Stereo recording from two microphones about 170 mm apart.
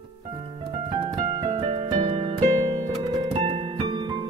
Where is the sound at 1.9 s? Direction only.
30° right (ahead or behind).